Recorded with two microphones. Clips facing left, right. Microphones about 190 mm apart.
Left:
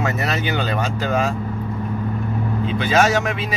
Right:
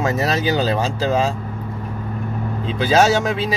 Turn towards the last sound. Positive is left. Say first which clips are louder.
# right 2 dB
turn(degrees=-30)  # may be behind; listen again after turning